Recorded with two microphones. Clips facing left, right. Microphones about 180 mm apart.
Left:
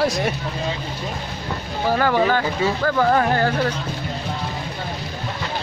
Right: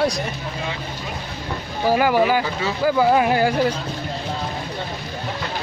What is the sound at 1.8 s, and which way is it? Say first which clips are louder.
Speech: right 1 dB; 10° right (ahead or behind).